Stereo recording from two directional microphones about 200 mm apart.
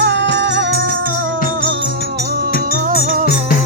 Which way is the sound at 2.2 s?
50° right (ahead or behind).